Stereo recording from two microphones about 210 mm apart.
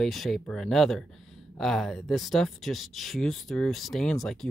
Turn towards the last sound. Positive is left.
turn(degrees=0)  # may be behind; listen again after turning